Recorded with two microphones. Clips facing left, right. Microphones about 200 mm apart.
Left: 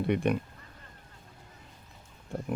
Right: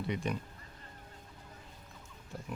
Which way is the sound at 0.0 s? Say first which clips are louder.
Left 8 dB; 60° left (ahead or behind).